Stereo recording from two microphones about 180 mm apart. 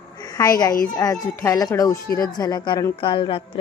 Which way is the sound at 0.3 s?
20° left (ahead or behind).